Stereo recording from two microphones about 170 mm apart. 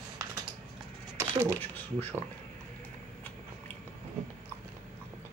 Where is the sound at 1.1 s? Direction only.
15° right (ahead or behind).